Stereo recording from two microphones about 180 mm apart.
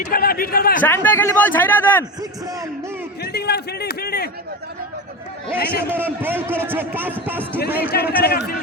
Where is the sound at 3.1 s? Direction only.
65° left (ahead or behind).